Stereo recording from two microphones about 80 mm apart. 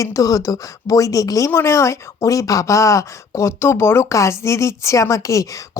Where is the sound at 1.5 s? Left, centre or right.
Left.